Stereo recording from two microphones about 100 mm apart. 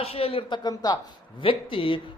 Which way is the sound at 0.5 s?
40° left (ahead or behind).